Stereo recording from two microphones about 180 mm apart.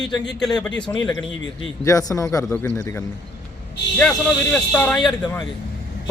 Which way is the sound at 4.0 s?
5° left (ahead or behind).